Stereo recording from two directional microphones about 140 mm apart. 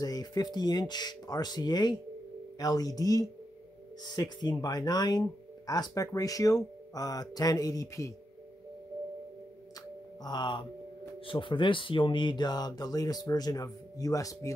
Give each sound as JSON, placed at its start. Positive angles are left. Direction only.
{"t": 0.0, "sound": "speech", "side_deg": 25}
{"t": 10.2, "sound": "speech", "side_deg": 30}